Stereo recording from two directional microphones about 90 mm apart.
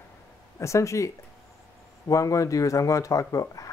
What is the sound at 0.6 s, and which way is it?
Speech, 35° left (ahead or behind).